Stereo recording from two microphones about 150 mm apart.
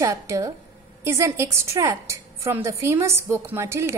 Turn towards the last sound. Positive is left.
turn(degrees=-15)  # may be behind; listen again after turning